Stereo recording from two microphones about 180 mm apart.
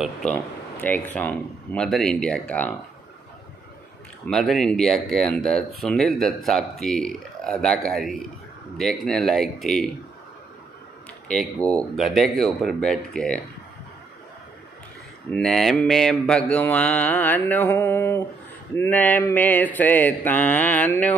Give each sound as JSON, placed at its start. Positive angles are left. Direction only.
{"t": 0.0, "sound": "mantra", "side_deg": 5}
{"t": 4.3, "sound": "speech", "side_deg": 0}
{"t": 11.2, "sound": "speech", "side_deg": 5}
{"t": 15.3, "sound": "mantra", "side_deg": 0}